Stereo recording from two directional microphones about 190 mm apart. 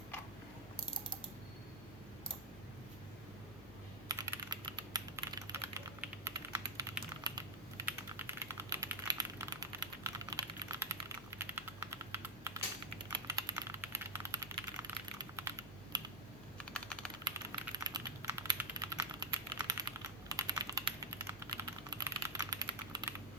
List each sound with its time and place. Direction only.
4.1 s typing: 20° right (ahead or behind)
7.9 s typing: 10° right (ahead or behind)
11.3 s computer keyboard: 10° right (ahead or behind)
13.1 s typing: 20° right (ahead or behind)
16.7 s typing: 5° left (ahead or behind)
17.7 s typing: 20° right (ahead or behind)